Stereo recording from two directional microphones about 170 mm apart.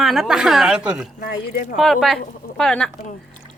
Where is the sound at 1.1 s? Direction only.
55° left (ahead or behind).